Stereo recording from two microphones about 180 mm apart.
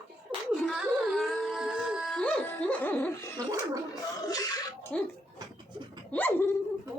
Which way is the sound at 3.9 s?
20° left (ahead or behind).